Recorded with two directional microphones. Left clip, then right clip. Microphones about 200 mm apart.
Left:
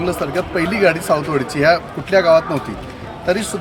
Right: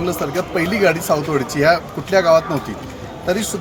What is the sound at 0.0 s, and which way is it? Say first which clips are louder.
Speech: left 1 dB; 5° left (ahead or behind).